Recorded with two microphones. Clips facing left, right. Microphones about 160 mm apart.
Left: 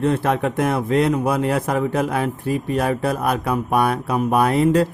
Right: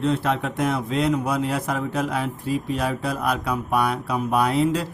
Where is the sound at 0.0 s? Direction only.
55° left (ahead or behind).